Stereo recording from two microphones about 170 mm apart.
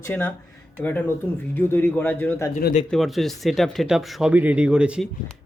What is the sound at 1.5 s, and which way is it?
Speech, 10° left (ahead or behind).